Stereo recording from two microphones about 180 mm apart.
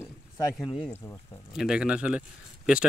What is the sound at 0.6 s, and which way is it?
Speech, 30° left (ahead or behind).